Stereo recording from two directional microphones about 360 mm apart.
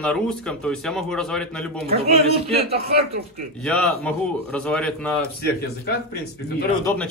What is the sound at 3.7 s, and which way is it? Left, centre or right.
Speech, centre.